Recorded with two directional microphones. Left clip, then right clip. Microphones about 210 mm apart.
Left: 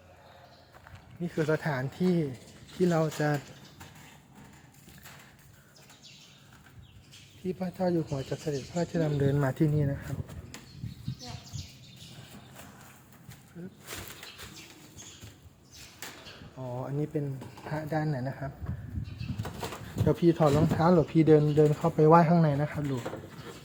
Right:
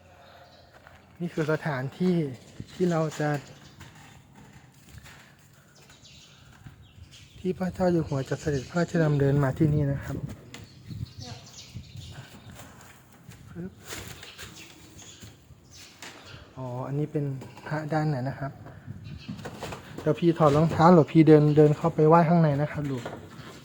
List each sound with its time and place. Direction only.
1.2 s speech: 5° right (ahead or behind)
7.4 s speech: 25° right (ahead or behind)
16.6 s a sound: 10° right (ahead or behind)
17.7 s speech: 20° right (ahead or behind)
20.1 s speech: 10° right (ahead or behind)
21.7 s speech: 5° right (ahead or behind)